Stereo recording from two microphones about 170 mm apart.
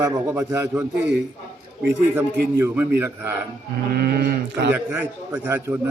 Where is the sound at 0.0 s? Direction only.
15° right (ahead or behind).